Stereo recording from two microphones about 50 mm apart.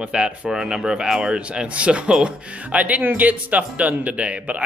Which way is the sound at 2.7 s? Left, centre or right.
Right.